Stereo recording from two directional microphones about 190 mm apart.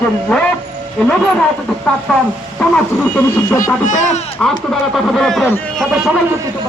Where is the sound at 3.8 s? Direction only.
40° left (ahead or behind).